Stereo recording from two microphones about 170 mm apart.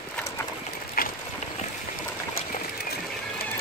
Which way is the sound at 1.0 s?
60° left (ahead or behind).